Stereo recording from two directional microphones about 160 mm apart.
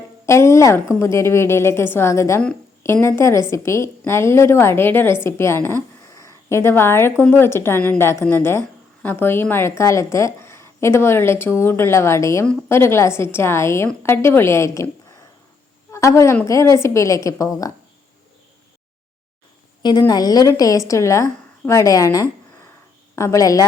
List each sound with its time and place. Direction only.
0.3 s a woman's voice: 15° left (ahead or behind)
15.9 s a woman's voice: 20° left (ahead or behind)
19.8 s a woman's voice: 25° left (ahead or behind)